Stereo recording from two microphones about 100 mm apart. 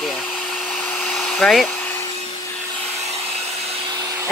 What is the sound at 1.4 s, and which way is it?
Speech, centre (ahead or behind).